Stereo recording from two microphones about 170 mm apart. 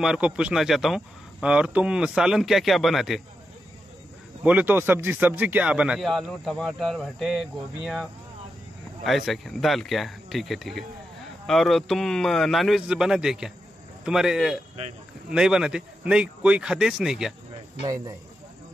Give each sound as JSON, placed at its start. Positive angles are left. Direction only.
{"t": 0.0, "sound": "speech", "side_deg": -5}
{"t": 4.5, "sound": "speech", "side_deg": -10}
{"t": 17.8, "sound": "speech", "side_deg": -20}